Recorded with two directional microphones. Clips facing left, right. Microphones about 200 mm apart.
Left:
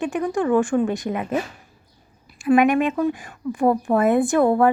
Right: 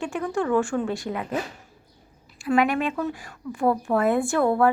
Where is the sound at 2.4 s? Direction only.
20° left (ahead or behind).